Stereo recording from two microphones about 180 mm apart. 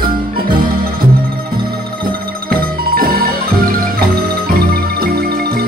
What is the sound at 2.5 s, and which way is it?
Music, 55° right (ahead or behind).